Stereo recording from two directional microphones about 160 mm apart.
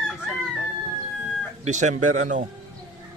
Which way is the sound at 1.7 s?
50° right (ahead or behind).